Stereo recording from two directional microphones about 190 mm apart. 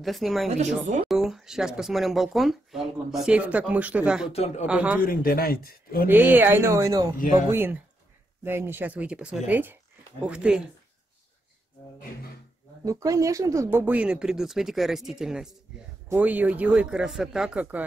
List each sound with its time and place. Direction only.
0.0 s speech: centre (ahead or behind)
4.3 s a man's voice: 35° left (ahead or behind)
4.6 s speech: 5° right (ahead or behind)
5.0 s speech: 50° left (ahead or behind)
6.0 s speech: 10° right (ahead or behind)
7.2 s speech: 45° left (ahead or behind)
7.4 s speech: 10° right (ahead or behind)
12.8 s speech: 15° right (ahead or behind)